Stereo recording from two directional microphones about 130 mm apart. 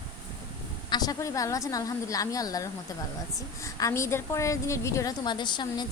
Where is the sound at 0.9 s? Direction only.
30° left (ahead or behind).